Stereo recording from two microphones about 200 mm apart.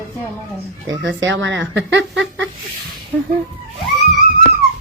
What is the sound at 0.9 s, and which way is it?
Speech, 65° right (ahead or behind).